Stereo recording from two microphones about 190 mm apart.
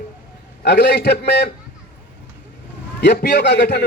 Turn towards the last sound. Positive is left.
turn(degrees=60)  # may be behind; listen again after turning